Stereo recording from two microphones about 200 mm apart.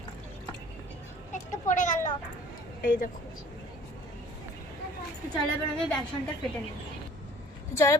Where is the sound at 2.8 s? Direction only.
45° left (ahead or behind).